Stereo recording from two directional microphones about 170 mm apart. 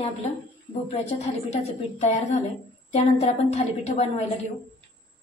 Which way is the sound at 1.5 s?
40° left (ahead or behind).